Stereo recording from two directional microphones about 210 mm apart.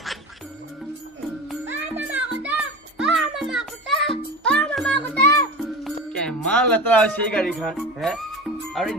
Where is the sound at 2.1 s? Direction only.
5° right (ahead or behind).